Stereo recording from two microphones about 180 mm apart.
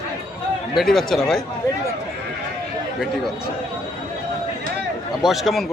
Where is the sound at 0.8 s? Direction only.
Centre (ahead or behind).